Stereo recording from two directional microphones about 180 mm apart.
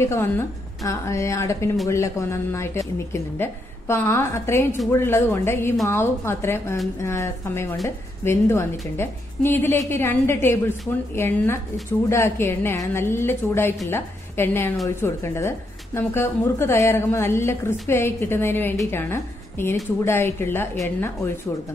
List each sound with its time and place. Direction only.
0.0 s a woman's voice: 15° left (ahead or behind)